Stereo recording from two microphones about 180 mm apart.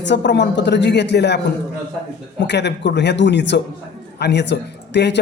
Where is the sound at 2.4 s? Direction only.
75° left (ahead or behind).